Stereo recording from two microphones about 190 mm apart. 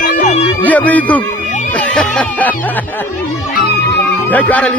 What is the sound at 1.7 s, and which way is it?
Snicker, 5° left (ahead or behind).